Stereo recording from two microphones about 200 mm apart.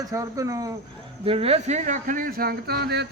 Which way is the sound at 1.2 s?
30° right (ahead or behind).